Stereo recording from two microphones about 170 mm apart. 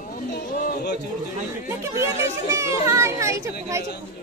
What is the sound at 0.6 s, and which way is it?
Speech, 75° left (ahead or behind).